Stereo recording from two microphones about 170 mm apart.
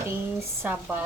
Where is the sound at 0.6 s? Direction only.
10° right (ahead or behind).